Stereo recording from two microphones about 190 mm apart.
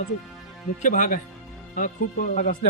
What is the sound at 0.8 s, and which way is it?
Speech, 45° left (ahead or behind).